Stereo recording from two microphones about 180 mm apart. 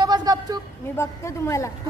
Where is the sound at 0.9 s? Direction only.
15° left (ahead or behind).